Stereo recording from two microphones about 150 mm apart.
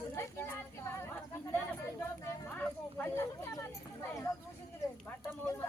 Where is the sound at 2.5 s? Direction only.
10° left (ahead or behind).